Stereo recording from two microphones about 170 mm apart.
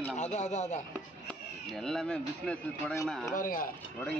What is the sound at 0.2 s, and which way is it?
Speech, 45° left (ahead or behind).